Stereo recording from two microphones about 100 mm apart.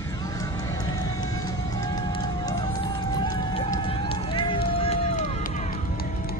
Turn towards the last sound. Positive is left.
turn(degrees=65)  # may be behind; listen again after turning